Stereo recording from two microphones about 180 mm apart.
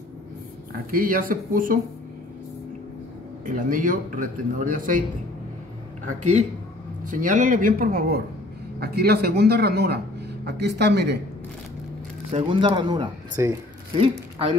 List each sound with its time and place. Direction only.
0.9 s a man's voice: 50° right (ahead or behind)
3.4 s a man's voice: 50° right (ahead or behind)
7.1 s a man's voice: 45° right (ahead or behind); by 11.1 s 70° right (ahead or behind)
12.3 s speech: 30° right (ahead or behind); by 13.5 s 15° right (ahead or behind)
13.9 s speech: 30° right (ahead or behind)